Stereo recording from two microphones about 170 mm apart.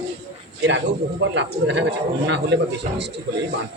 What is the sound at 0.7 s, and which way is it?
A man's voice, 90° right.